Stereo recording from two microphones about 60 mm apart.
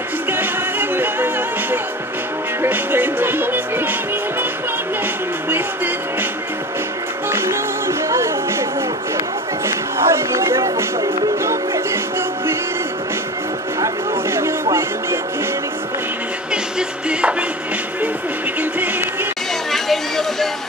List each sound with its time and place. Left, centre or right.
0.3 s music: right
7.2 s music: right
8.1 s a sound: right
9.7 s music: right
14.3 s music: right
17.1 s music: right
19.7 s music: centre